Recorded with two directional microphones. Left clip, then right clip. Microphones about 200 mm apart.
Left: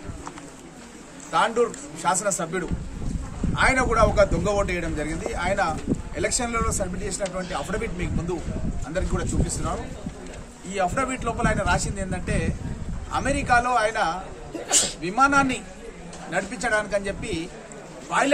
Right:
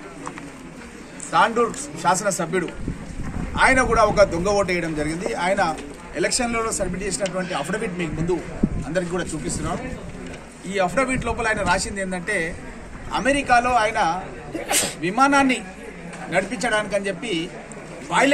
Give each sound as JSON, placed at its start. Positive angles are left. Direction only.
{"t": 1.3, "sound": "a man's voice", "side_deg": 15}
{"t": 14.7, "sound": "a man's voice", "side_deg": 60}
{"t": 15.0, "sound": "a man's voice", "side_deg": 5}